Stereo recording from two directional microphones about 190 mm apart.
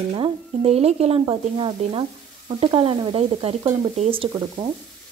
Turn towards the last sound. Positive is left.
turn(degrees=-30)  # may be behind; listen again after turning